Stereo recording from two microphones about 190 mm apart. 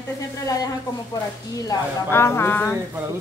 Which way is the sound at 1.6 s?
15° left (ahead or behind).